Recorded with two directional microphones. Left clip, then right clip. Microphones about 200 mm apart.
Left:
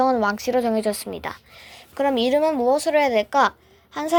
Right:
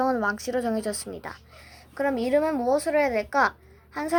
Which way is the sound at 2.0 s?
45° left (ahead or behind).